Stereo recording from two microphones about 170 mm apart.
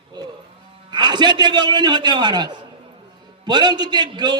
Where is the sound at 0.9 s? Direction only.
25° right (ahead or behind).